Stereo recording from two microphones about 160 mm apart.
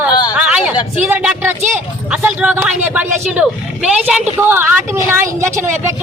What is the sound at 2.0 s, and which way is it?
Speech, 5° right (ahead or behind).